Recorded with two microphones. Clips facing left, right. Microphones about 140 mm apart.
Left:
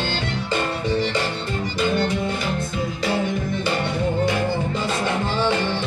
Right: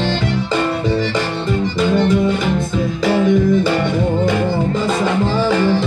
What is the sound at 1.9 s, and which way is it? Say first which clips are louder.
Music: right 10 dB; 90° right.